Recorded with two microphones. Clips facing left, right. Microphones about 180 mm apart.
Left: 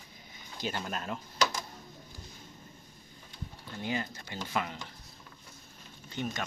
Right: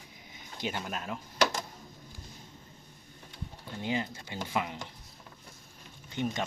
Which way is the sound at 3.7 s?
20° right (ahead or behind).